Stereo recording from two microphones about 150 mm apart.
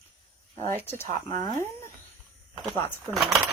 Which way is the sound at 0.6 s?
15° left (ahead or behind).